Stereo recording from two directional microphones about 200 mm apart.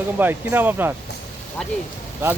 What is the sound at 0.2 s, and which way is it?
Speech, 10° right (ahead or behind).